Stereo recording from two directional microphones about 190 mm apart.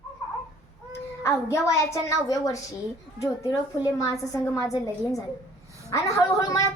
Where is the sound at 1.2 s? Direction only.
15° left (ahead or behind).